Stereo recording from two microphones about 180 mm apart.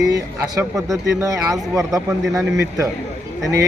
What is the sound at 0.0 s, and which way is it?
Speech, 20° right (ahead or behind).